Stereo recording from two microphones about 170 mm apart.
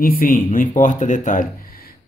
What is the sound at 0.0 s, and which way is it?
A man's voice, 55° left (ahead or behind).